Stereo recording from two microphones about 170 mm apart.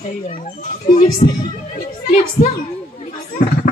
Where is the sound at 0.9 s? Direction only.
30° left (ahead or behind).